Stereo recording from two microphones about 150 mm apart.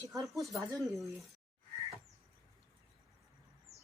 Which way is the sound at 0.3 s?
Centre (ahead or behind).